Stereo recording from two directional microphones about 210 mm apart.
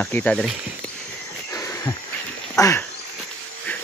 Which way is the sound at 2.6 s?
15° left (ahead or behind).